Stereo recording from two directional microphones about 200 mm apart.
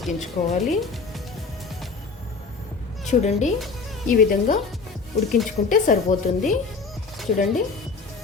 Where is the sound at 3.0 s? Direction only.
35° left (ahead or behind).